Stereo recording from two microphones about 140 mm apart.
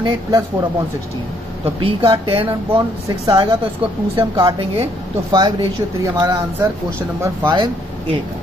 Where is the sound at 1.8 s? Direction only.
40° right (ahead or behind).